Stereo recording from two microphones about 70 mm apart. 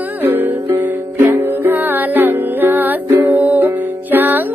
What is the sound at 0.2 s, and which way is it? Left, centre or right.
Music, right.